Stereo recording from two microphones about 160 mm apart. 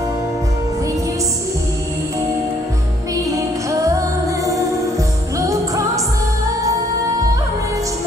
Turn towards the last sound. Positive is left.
turn(degrees=-20)  # may be behind; listen again after turning